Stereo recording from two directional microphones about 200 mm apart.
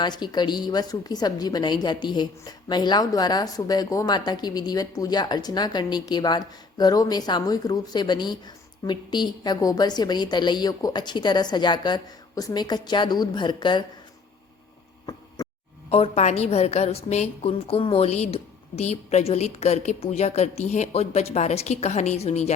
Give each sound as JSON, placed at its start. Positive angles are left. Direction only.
{"t": 0.0, "sound": "a woman's voice", "side_deg": 20}
{"t": 15.1, "sound": "a sound", "side_deg": 20}
{"t": 15.9, "sound": "a woman's voice", "side_deg": 30}